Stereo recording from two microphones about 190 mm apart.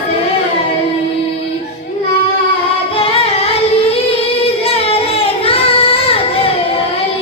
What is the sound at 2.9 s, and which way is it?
Singing, 30° left (ahead or behind).